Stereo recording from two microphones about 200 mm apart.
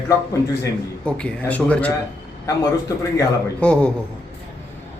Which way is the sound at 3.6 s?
5° left (ahead or behind).